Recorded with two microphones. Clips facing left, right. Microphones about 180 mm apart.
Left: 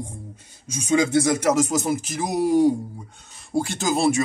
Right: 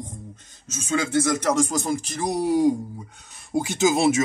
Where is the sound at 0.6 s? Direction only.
15° left (ahead or behind).